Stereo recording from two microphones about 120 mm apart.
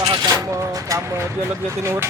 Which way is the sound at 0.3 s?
30° right (ahead or behind).